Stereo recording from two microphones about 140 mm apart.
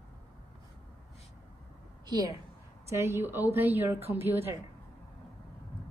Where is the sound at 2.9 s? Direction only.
20° right (ahead or behind).